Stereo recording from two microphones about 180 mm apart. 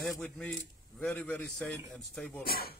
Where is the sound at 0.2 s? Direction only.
5° left (ahead or behind).